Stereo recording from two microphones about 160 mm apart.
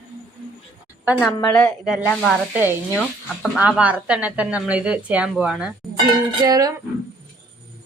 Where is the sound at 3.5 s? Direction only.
5° right (ahead or behind).